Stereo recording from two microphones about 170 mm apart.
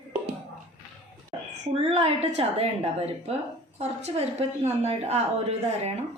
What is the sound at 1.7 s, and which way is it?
Speech, 35° right (ahead or behind).